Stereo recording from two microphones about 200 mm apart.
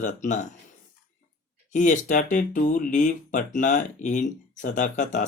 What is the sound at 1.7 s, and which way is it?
Speech, 35° left (ahead or behind).